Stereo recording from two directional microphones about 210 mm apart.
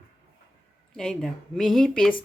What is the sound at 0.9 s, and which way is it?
Speech, centre (ahead or behind).